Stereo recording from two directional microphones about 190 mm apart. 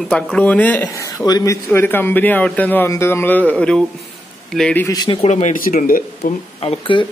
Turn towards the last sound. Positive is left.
turn(degrees=25)  # may be behind; listen again after turning